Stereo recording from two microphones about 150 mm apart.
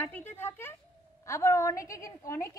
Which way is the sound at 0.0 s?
15° left (ahead or behind).